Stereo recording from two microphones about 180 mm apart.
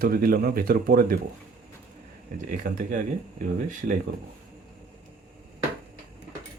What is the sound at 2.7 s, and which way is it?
Speech, 50° right (ahead or behind).